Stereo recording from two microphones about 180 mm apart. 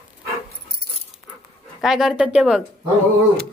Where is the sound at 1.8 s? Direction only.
Centre (ahead or behind).